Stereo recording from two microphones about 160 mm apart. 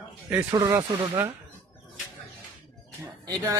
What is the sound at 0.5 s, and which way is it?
Speech, 20° right (ahead or behind).